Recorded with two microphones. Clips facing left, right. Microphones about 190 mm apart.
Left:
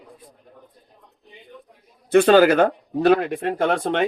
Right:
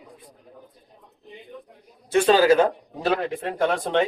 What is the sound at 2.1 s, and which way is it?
Speech, 60° left (ahead or behind).